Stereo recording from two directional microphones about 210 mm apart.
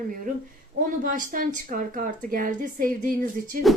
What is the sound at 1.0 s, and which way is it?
Speech, 40° right (ahead or behind).